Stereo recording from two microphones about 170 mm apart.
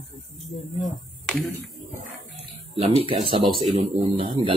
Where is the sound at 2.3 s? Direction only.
35° right (ahead or behind).